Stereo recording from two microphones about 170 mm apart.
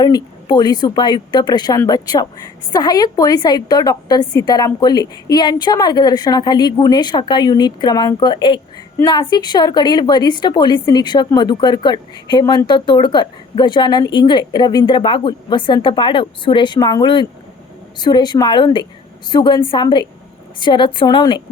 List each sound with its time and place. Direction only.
0.0 s a woman's voice: 25° left (ahead or behind)